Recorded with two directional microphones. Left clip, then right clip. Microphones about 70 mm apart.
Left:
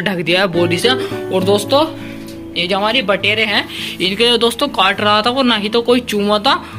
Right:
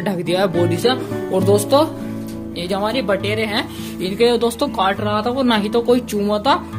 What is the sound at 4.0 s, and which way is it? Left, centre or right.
Speech, centre.